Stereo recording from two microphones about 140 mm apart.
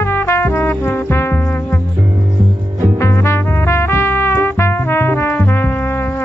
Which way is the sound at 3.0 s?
20° left (ahead or behind).